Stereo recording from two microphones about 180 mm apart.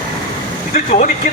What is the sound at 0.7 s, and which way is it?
Speech, 40° left (ahead or behind).